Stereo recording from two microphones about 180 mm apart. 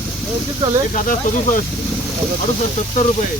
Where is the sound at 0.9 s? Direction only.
45° left (ahead or behind).